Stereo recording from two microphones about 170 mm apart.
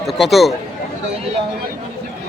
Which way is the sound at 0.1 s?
Centre (ahead or behind).